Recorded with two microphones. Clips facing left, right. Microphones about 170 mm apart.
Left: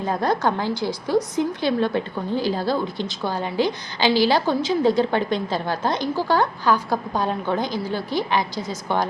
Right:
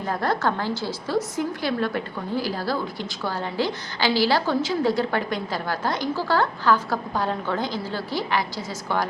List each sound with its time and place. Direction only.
0.0 s a woman's voice: 20° left (ahead or behind)